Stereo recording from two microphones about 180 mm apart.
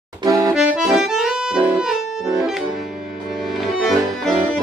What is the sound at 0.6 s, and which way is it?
Accordion, 5° right (ahead or behind).